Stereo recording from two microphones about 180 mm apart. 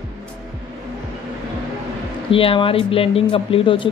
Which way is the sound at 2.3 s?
30° left (ahead or behind).